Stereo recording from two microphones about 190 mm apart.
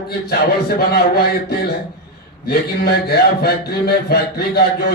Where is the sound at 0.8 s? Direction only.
55° left (ahead or behind).